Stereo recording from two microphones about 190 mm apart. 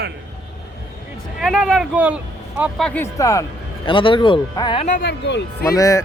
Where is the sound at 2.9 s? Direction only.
15° left (ahead or behind).